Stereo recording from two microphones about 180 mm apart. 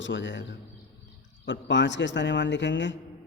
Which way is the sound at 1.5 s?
80° left.